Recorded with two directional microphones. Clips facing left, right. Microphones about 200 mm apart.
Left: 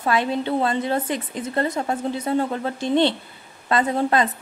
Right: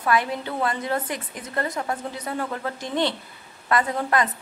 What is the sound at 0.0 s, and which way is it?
A woman's voice, 25° left (ahead or behind).